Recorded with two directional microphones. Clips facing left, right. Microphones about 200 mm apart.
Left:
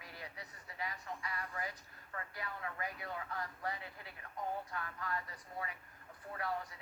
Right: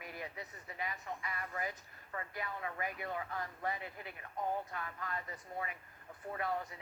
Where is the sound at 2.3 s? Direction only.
20° right (ahead or behind).